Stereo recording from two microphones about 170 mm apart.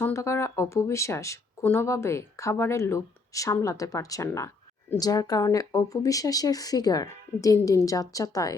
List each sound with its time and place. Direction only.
0.0 s speech: 15° left (ahead or behind)